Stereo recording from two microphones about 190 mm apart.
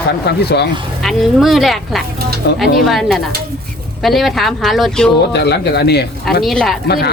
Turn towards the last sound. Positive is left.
turn(degrees=60)  # may be behind; listen again after turning